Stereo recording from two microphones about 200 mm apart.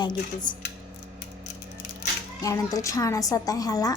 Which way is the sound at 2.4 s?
15° left (ahead or behind).